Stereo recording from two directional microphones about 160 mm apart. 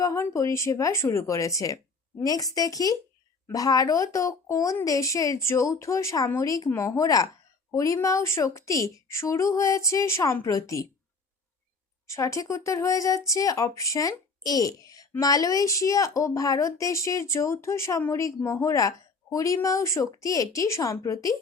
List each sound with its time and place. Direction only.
0.0 s speech: 15° left (ahead or behind)
12.0 s speech: 20° left (ahead or behind)